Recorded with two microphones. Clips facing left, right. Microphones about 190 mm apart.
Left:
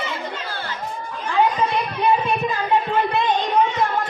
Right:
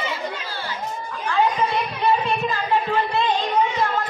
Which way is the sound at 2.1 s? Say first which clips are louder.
Left 1 dB; 15° left (ahead or behind).